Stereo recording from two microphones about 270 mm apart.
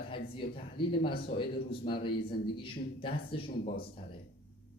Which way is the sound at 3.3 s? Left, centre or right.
Left.